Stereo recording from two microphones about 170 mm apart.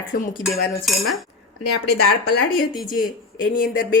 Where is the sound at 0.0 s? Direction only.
50° left (ahead or behind).